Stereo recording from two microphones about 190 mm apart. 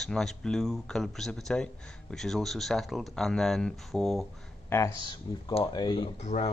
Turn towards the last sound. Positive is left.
turn(degrees=35)  # may be behind; listen again after turning